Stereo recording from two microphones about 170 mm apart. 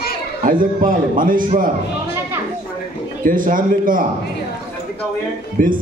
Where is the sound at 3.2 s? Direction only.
50° right (ahead or behind).